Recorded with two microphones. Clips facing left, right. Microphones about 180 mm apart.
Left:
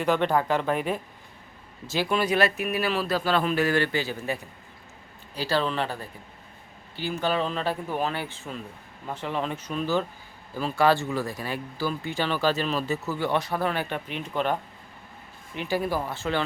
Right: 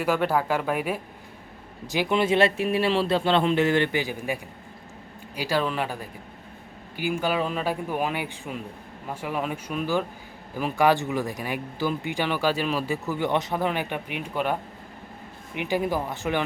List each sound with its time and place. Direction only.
0.0 s speech: 5° right (ahead or behind)
1.9 s speech: 20° right (ahead or behind)